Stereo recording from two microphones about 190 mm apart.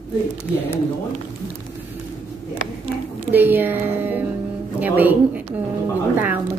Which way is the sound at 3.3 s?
10° right (ahead or behind).